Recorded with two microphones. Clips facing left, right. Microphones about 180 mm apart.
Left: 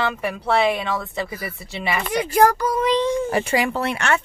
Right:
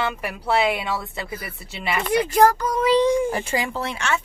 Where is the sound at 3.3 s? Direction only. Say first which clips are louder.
Left 4 dB; 70° left (ahead or behind).